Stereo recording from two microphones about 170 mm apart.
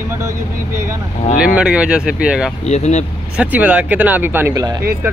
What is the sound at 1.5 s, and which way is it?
Speech, 5° right (ahead or behind).